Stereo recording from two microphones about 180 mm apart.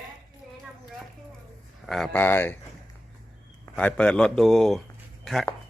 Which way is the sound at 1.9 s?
5° left (ahead or behind).